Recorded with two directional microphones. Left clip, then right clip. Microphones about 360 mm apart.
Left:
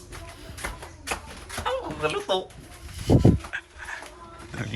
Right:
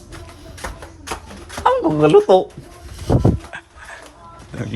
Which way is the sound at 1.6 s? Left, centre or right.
Right.